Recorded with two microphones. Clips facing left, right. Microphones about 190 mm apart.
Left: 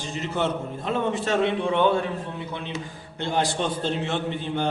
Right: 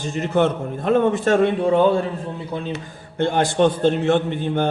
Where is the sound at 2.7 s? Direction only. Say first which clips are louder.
Right 4 dB; 55° right (ahead or behind).